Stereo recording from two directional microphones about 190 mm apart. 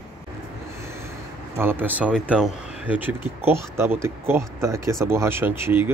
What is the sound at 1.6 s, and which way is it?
Speech, 10° right (ahead or behind).